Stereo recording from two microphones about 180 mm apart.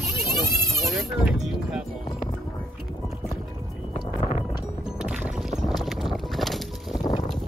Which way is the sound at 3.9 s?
25° left (ahead or behind).